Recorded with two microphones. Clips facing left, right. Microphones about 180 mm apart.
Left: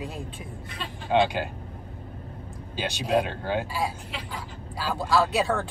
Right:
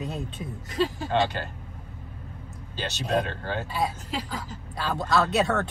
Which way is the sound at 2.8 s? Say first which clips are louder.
Left 2 dB; 10° left (ahead or behind).